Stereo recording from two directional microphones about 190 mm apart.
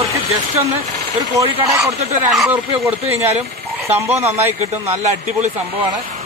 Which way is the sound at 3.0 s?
35° right (ahead or behind).